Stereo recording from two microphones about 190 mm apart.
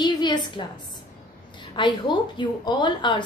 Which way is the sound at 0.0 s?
25° left (ahead or behind).